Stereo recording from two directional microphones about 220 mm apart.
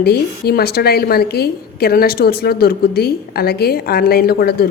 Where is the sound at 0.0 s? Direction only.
45° left (ahead or behind).